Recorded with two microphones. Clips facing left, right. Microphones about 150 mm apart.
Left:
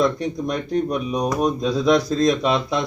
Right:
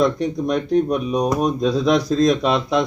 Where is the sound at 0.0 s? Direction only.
Centre (ahead or behind).